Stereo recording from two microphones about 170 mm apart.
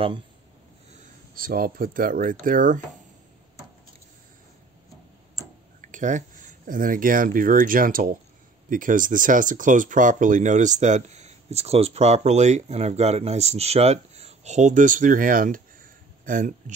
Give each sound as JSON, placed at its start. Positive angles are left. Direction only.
{"t": 1.0, "sound": "speech", "side_deg": -55}
{"t": 5.8, "sound": "speech", "side_deg": -50}